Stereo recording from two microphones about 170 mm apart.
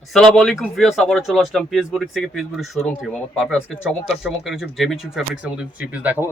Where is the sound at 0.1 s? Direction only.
Centre (ahead or behind).